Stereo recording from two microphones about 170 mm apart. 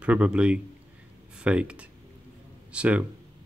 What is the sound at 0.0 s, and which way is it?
Speech, 5° right (ahead or behind).